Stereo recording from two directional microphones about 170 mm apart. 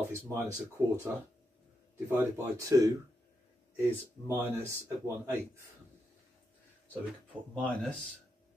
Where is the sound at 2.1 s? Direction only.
15° right (ahead or behind).